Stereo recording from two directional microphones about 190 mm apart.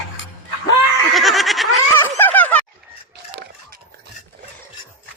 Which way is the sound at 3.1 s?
55° right (ahead or behind).